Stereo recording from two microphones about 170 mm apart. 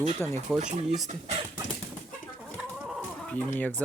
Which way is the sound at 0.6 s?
45° right (ahead or behind).